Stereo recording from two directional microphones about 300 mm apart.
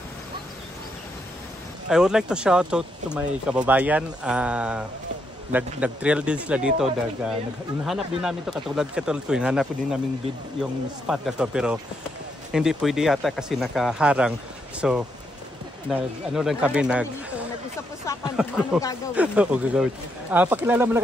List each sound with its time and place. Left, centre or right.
1.9 s speech: centre
18.3 s speech: centre